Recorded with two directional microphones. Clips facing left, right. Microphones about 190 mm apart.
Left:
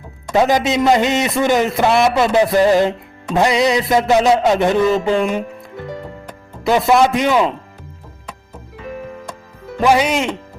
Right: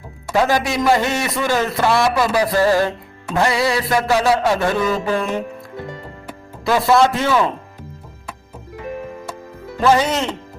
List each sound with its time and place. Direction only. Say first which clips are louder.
0.3 s a man's voice: left 3 dB; 20° left (ahead or behind)
6.7 s speech: left 1 dB; 20° left (ahead or behind)
9.8 s speech: left 1 dB; 10° left (ahead or behind)